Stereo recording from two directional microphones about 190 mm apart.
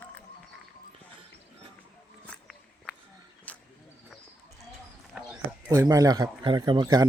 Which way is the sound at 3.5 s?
5° left (ahead or behind).